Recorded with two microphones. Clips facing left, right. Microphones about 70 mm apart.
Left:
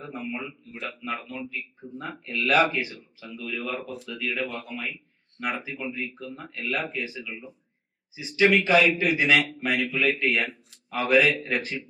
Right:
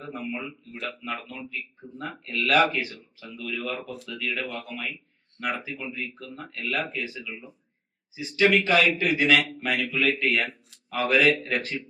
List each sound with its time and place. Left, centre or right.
0.1 s speech: centre
10.2 s speech: centre